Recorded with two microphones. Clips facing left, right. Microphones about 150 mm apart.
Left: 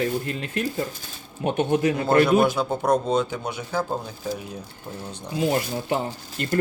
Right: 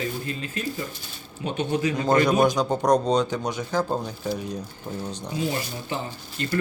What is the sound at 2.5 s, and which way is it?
Speech, 5° left (ahead or behind).